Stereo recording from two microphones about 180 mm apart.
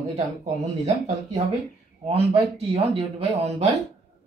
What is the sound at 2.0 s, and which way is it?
Speech, 35° right (ahead or behind).